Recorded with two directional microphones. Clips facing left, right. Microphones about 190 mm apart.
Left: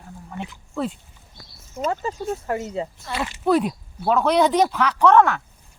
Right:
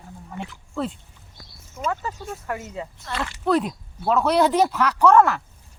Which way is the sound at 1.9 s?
25° left (ahead or behind).